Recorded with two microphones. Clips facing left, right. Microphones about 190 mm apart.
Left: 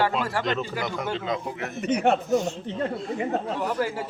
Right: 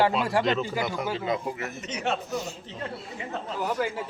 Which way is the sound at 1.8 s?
55° left (ahead or behind).